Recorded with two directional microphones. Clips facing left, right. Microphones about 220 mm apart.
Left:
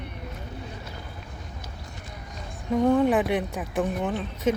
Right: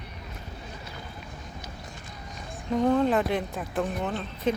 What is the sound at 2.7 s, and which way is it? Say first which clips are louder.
Speech: left 2 dB; 10° left (ahead or behind).